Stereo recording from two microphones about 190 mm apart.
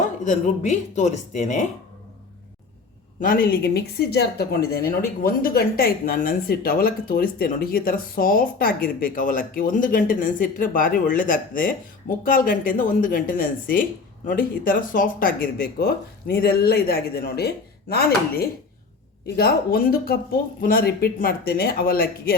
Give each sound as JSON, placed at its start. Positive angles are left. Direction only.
{"t": 0.3, "sound": "speech", "side_deg": 40}
{"t": 3.2, "sound": "speech", "side_deg": 50}